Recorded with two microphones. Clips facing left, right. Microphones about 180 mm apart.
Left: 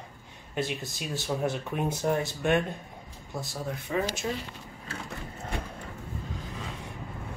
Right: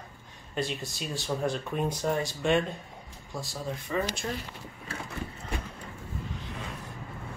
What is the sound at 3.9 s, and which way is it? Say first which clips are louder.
Speech: left 1 dB; 10° left (ahead or behind).